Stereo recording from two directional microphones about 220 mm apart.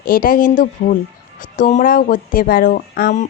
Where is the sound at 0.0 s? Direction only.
40° left (ahead or behind).